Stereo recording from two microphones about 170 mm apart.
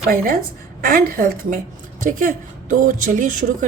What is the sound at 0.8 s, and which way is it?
A woman's voice, 55° right (ahead or behind).